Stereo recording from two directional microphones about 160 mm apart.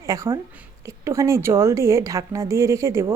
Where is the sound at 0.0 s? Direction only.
20° right (ahead or behind).